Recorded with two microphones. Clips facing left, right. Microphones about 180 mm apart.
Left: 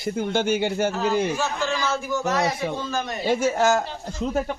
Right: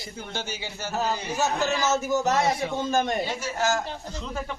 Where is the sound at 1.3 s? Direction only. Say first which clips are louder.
Even; 40° right (ahead or behind).